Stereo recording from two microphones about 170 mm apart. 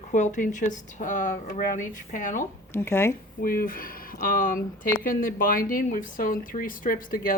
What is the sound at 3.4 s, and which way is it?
Speech, 55° left (ahead or behind).